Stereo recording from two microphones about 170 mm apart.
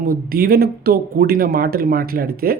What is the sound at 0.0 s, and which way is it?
Speech, 60° right (ahead or behind).